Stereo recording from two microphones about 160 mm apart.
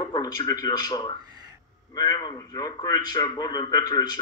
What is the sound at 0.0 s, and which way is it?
Speech, 25° left (ahead or behind).